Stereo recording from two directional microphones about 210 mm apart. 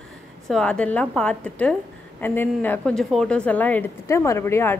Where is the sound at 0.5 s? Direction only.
5° left (ahead or behind).